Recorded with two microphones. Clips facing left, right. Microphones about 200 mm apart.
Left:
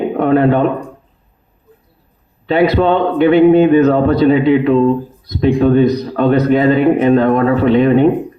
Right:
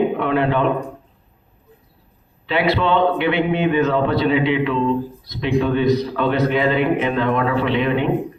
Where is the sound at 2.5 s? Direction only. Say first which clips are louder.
Left 7 dB; 45° left (ahead or behind).